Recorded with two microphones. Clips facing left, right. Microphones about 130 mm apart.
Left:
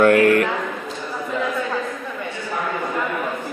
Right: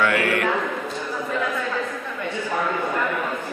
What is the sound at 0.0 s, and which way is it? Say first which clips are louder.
Speech: left 7 dB; 45° left (ahead or behind).